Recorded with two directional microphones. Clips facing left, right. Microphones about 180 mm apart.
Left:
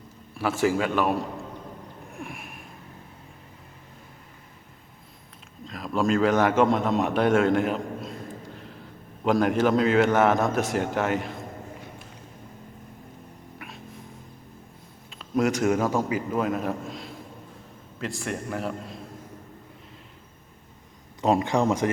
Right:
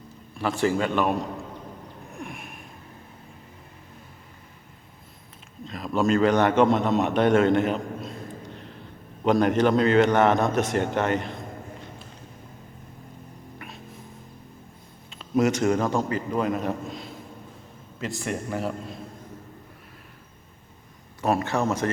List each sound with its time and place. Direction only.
0.6 s a man's voice: 5° left (ahead or behind)
2.1 s a sound: centre (ahead or behind)
5.6 s a man's voice: centre (ahead or behind)
9.2 s a man's voice: centre (ahead or behind)
13.6 s music: centre (ahead or behind)
15.1 s a man's voice: centre (ahead or behind)
21.2 s speech: 15° left (ahead or behind)